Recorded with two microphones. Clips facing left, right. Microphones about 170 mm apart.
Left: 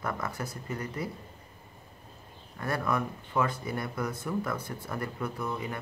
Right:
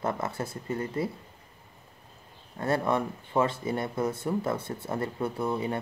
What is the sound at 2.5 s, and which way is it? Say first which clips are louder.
Speech: right 4 dB; 25° right (ahead or behind).